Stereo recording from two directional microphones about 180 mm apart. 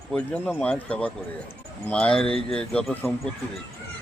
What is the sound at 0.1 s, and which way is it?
Speech, 5° left (ahead or behind).